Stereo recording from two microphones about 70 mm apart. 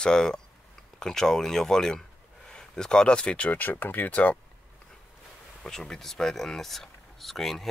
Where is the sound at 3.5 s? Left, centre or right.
Left.